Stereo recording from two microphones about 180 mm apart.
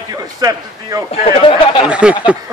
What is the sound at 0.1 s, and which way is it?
Speech, 20° right (ahead or behind).